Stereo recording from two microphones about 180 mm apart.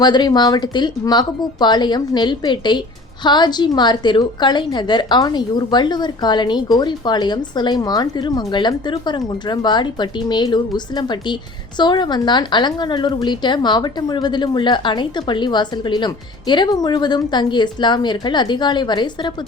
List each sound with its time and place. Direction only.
0.0 s a woman's voice: 25° left (ahead or behind)